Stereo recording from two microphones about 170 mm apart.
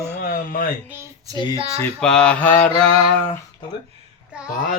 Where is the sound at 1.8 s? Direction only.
5° left (ahead or behind).